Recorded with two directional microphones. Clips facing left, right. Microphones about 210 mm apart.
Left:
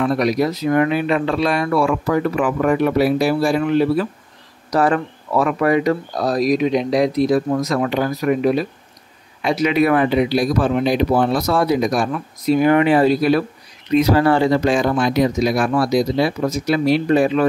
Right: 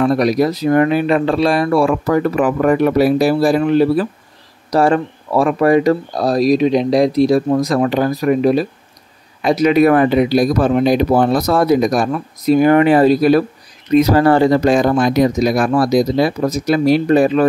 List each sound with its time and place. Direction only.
0.0 s speech: 35° right (ahead or behind)